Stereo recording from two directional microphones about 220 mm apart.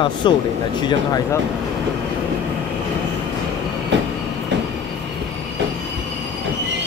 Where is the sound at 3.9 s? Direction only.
55° right (ahead or behind).